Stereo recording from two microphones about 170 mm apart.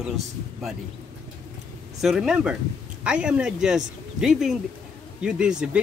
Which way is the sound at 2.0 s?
5° right (ahead or behind).